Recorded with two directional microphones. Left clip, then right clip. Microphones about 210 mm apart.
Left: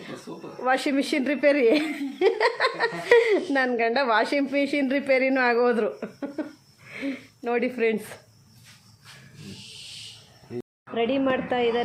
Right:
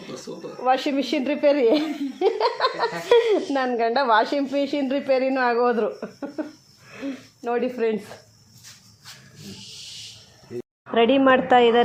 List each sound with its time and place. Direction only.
0.6 s speech: 5° left (ahead or behind)
10.9 s a woman's voice: 25° right (ahead or behind)